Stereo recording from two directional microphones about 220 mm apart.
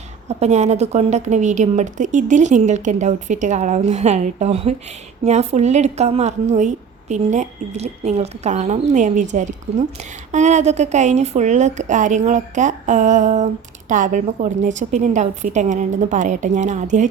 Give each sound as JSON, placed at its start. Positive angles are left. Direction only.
{"t": 0.3, "sound": "a woman's voice", "side_deg": -30}